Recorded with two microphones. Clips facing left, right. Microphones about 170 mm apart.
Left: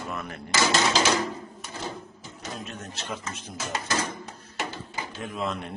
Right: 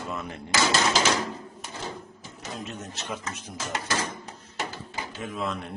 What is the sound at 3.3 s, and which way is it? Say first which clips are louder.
Speech: even; 10° right (ahead or behind).